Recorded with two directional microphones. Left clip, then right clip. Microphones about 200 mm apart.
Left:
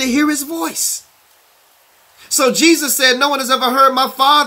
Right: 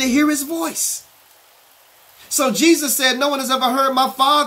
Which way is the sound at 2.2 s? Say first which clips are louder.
Left 4 dB; 5° left (ahead or behind).